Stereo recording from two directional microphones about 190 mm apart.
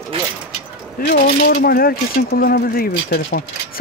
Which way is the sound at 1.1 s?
55° left (ahead or behind).